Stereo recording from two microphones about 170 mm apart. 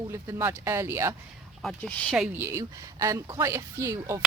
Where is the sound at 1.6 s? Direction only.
5° left (ahead or behind).